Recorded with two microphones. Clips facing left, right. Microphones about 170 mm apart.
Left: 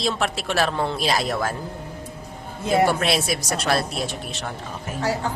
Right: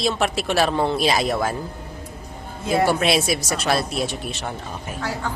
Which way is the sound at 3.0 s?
Centre (ahead or behind).